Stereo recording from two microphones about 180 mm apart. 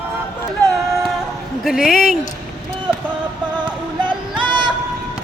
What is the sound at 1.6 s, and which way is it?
Speech, centre (ahead or behind).